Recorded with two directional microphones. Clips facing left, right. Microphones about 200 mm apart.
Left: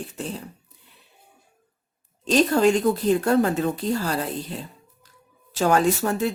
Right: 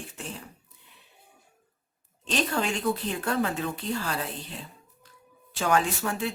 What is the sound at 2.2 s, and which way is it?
Speech, 40° left (ahead or behind).